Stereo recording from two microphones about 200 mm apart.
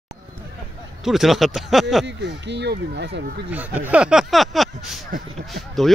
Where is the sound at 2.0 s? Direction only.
60° right (ahead or behind).